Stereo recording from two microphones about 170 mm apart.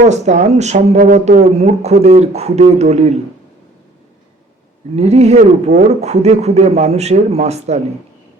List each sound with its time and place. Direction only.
0.0 s speech: 45° right (ahead or behind)
4.9 s speech: 40° right (ahead or behind)